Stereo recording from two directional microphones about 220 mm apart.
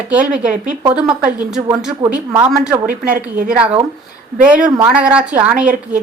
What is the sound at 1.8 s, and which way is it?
Speech, 5° right (ahead or behind).